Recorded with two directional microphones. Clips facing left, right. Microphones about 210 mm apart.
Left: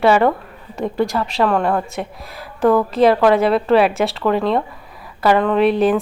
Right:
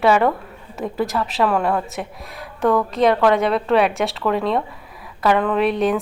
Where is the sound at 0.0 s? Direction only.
Centre (ahead or behind).